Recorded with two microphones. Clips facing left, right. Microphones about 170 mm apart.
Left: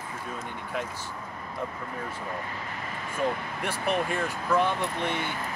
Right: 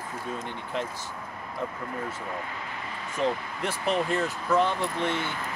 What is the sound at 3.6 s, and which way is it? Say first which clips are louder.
Speech: right 1 dB; 10° left (ahead or behind).